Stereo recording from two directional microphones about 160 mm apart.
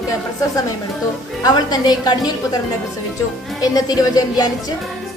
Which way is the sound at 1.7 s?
25° left (ahead or behind).